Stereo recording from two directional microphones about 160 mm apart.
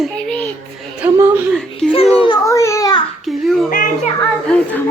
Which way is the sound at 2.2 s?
25° left (ahead or behind).